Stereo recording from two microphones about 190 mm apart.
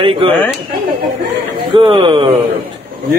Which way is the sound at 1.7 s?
25° right (ahead or behind).